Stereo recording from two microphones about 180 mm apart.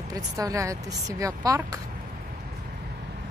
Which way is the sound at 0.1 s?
20° right (ahead or behind).